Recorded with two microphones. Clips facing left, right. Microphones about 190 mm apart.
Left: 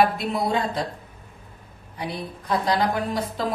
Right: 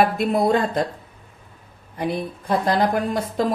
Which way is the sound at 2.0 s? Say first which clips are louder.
Right 6 dB; 50° right (ahead or behind).